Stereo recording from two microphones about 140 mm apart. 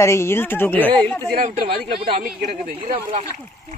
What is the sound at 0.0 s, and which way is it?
A woman's voice, 20° left (ahead or behind).